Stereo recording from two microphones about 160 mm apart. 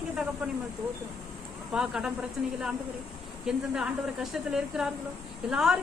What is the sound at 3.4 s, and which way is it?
A woman's voice, 5° right (ahead or behind).